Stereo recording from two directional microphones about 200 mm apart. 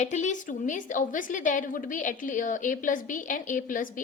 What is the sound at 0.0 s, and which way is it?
A woman's voice, 35° left (ahead or behind).